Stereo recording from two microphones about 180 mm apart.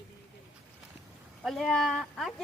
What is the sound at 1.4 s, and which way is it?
Speech, centre (ahead or behind).